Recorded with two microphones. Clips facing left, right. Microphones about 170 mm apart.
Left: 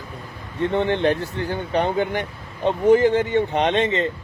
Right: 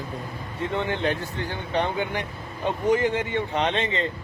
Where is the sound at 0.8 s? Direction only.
35° left (ahead or behind).